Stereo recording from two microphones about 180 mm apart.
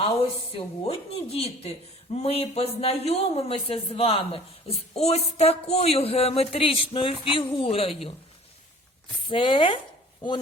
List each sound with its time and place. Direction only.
0.2 s a man's voice: 35° left (ahead or behind)
9.3 s speech: 30° left (ahead or behind)